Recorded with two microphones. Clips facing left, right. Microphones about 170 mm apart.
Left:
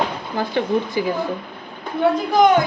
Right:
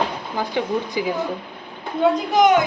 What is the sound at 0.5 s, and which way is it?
Speech, 10° right (ahead or behind).